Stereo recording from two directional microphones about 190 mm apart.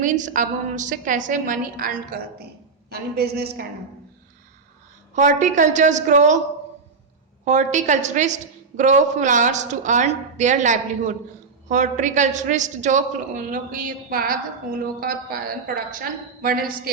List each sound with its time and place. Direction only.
0.0 s a woman's voice: 40° right (ahead or behind)
5.1 s a woman's voice: 40° right (ahead or behind)
7.4 s a woman's voice: 40° right (ahead or behind)